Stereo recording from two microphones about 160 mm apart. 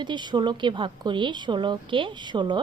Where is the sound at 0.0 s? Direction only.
30° right (ahead or behind).